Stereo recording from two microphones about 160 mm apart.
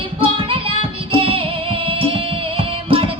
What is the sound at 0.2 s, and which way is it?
Music, 35° right (ahead or behind).